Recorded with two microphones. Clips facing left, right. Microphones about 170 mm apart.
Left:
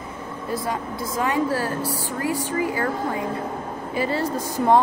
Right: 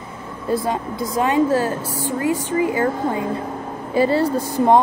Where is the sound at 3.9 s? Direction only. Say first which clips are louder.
Right 7 dB; 30° right (ahead or behind).